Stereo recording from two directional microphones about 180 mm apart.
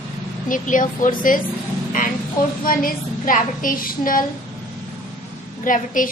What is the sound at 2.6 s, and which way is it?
A woman's voice, 50° left (ahead or behind).